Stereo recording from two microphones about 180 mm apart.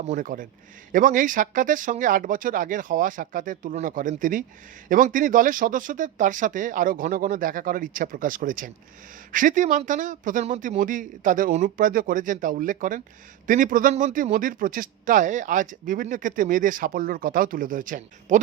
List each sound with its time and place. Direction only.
0.1 s speech: 50° right (ahead or behind)